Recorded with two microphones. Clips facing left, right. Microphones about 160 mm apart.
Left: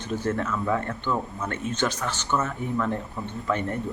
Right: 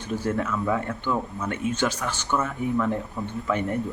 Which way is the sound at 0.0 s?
10° right (ahead or behind).